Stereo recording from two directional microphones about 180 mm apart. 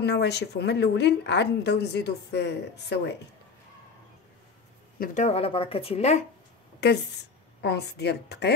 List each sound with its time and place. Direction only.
0.0 s a woman's voice: 70° left (ahead or behind)
4.9 s speech: 55° left (ahead or behind)
5.2 s speech: 35° left (ahead or behind)
7.6 s a woman's voice: 65° left (ahead or behind)